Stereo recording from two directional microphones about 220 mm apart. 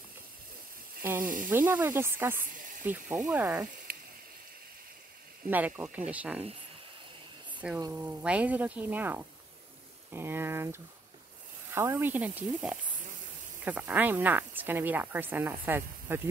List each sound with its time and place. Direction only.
1.2 s speech: 40° right (ahead or behind)
1.5 s speech: 10° right (ahead or behind)
3.9 s frying: 40° right (ahead or behind)
5.5 s speech: 5° right (ahead or behind)
7.6 s speech: 10° right (ahead or behind)